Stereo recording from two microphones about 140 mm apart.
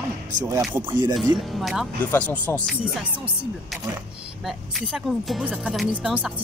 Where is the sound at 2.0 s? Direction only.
10° left (ahead or behind).